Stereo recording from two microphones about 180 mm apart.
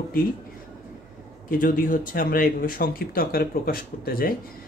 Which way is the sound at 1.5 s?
50° left (ahead or behind).